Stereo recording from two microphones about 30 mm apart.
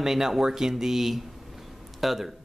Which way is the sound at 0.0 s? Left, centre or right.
Centre.